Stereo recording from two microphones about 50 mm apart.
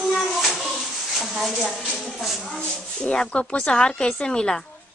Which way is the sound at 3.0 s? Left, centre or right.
Centre.